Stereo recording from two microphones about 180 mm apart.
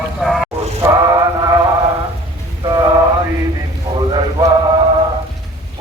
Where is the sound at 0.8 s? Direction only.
20° right (ahead or behind).